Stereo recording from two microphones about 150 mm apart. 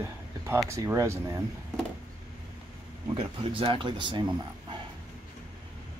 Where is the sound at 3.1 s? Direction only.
35° right (ahead or behind).